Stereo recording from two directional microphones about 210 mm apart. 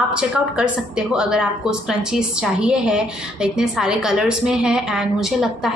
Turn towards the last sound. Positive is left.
turn(degrees=0)  # may be behind; listen again after turning